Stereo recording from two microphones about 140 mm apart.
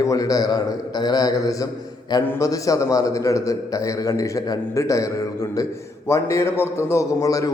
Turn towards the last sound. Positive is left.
turn(degrees=25)  # may be behind; listen again after turning